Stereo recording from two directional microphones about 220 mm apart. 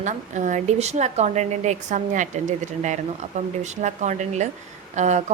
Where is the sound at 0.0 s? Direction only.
35° right (ahead or behind).